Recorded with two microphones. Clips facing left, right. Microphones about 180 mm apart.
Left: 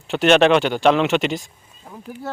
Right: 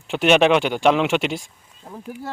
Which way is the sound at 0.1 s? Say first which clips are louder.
Left 1 dB; 10° right (ahead or behind).